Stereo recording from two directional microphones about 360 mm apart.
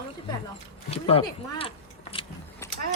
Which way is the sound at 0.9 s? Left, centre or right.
Centre.